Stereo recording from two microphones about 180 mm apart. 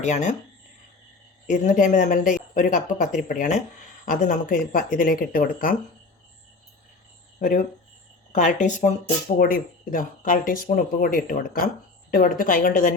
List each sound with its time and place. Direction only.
0.0 s speech: 40° left (ahead or behind)
1.5 s speech: 45° left (ahead or behind)
7.3 s speech: 45° left (ahead or behind)